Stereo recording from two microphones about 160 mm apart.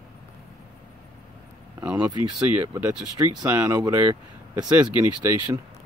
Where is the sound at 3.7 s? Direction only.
25° right (ahead or behind).